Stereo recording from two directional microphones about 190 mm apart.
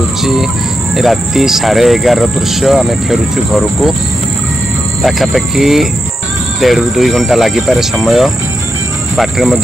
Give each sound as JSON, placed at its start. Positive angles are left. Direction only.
{"t": 0.9, "sound": "speech", "side_deg": 0}
{"t": 5.0, "sound": "speech", "side_deg": 0}